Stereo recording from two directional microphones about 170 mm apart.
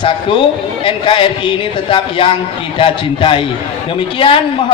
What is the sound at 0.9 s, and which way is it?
Speech, 30° left (ahead or behind).